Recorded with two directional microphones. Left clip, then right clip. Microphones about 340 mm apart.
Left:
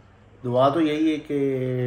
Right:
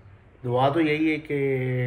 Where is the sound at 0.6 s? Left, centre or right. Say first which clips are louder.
Left 2 dB; centre.